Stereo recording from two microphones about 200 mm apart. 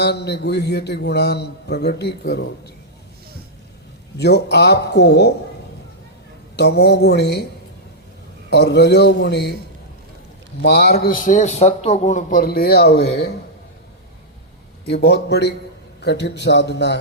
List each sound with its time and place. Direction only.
0.0 s a man's voice: 55° left (ahead or behind)
4.2 s a man's voice: 55° left (ahead or behind)
6.6 s a man's voice: 55° left (ahead or behind)
8.4 s a man's voice: 55° left (ahead or behind)
10.6 s a man's voice: 55° left (ahead or behind)
14.8 s a man's voice: 55° left (ahead or behind)